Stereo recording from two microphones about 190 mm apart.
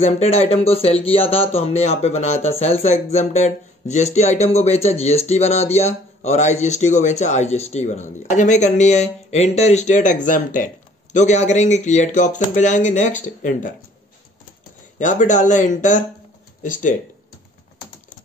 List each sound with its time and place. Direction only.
0.0 s speech: 35° left (ahead or behind)
15.0 s speech: 40° left (ahead or behind)